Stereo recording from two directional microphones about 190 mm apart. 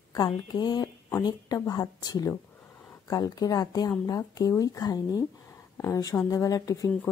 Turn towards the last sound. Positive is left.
turn(degrees=15)  # may be behind; listen again after turning